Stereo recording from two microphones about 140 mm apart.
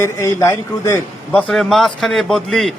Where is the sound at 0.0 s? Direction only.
20° left (ahead or behind).